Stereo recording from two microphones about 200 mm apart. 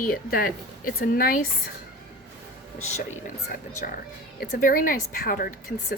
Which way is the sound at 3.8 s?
45° left (ahead or behind).